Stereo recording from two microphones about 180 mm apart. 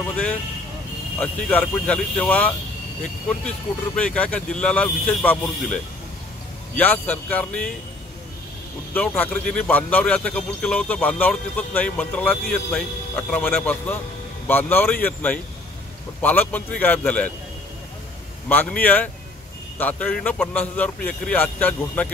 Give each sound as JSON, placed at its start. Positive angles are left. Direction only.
{"t": 0.1, "sound": "a man's voice", "side_deg": 5}
{"t": 6.8, "sound": "a man's voice", "side_deg": 10}
{"t": 8.9, "sound": "a man's voice", "side_deg": 10}
{"t": 18.5, "sound": "a man's voice", "side_deg": 10}